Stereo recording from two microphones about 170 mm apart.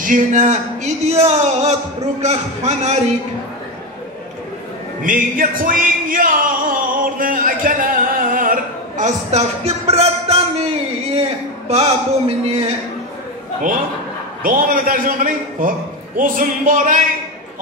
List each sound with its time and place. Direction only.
0.0 s speech: 50° right (ahead or behind)
5.0 s a sound: 55° right (ahead or behind); by 12.7 s 35° right (ahead or behind)
14.4 s a man's voice: 55° right (ahead or behind)